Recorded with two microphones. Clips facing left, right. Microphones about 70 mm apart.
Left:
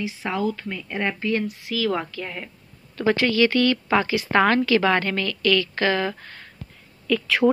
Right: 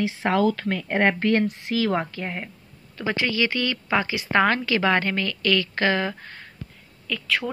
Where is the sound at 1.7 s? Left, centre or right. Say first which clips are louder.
Left 1 dB; right.